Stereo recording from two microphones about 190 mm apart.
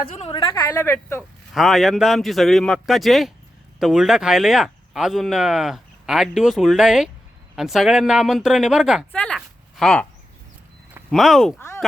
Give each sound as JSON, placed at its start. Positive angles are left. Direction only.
{"t": 0.2, "sound": "speech", "side_deg": 30}
{"t": 1.5, "sound": "speech", "side_deg": 0}
{"t": 9.1, "sound": "a sound", "side_deg": 5}
{"t": 11.1, "sound": "speech", "side_deg": 0}